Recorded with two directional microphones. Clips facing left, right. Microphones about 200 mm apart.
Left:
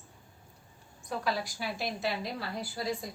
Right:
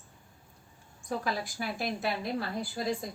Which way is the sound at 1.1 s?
50° right (ahead or behind).